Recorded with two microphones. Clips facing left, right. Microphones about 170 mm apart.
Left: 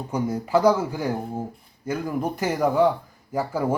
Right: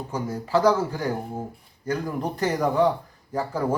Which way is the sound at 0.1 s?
10° left (ahead or behind).